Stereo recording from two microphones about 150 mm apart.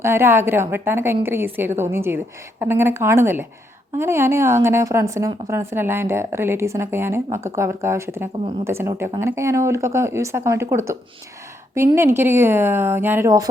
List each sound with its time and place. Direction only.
0.0 s a woman's voice: 15° right (ahead or behind)